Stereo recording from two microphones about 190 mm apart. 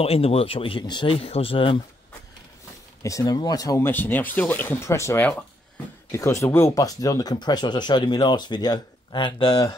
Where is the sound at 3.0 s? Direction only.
20° left (ahead or behind).